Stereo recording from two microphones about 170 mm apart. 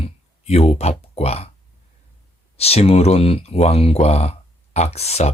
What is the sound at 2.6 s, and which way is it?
Speech, 35° left (ahead or behind).